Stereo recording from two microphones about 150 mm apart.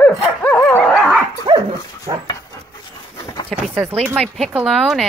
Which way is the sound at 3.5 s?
Centre (ahead or behind).